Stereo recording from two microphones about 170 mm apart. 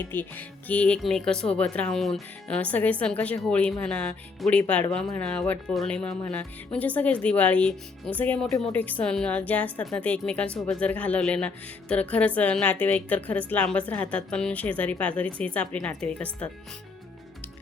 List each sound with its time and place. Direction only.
0.1 s speech: 10° left (ahead or behind)